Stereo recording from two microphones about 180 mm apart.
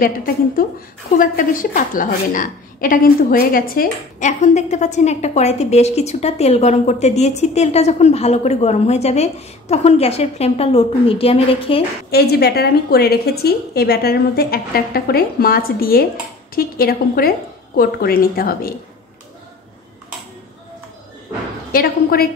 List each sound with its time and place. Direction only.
0.0 s a woman's voice: 50° left (ahead or behind); by 11.8 s 30° left (ahead or behind)
12.1 s a woman's voice: 60° left (ahead or behind)
21.7 s a woman's voice: 55° left (ahead or behind)